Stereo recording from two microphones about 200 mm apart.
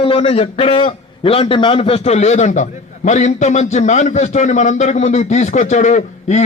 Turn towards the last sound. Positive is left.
turn(degrees=35)  # may be behind; listen again after turning